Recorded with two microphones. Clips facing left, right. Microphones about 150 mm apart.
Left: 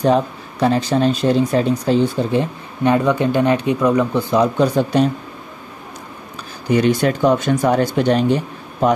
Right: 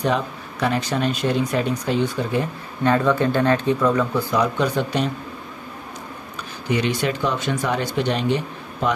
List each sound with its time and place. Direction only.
0.0 s speech: 35° left (ahead or behind)
2.8 s speech: 15° left (ahead or behind); by 5.0 s 35° left (ahead or behind)
6.7 s speech: 45° left (ahead or behind)